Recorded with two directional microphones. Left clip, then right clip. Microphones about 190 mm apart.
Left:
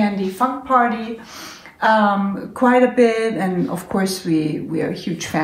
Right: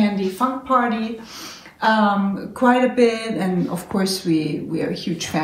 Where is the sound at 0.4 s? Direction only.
10° left (ahead or behind).